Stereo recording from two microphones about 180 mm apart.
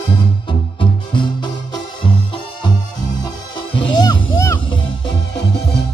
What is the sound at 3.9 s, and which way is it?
Music, 20° left (ahead or behind).